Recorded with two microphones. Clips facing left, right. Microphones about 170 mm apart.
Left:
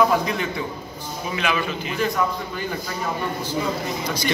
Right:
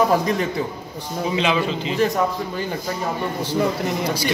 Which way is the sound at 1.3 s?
25° right (ahead or behind).